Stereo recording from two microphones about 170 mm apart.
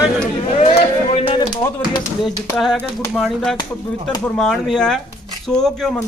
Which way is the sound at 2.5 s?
5° left (ahead or behind).